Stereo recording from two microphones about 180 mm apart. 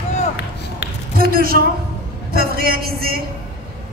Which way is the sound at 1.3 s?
55° right (ahead or behind).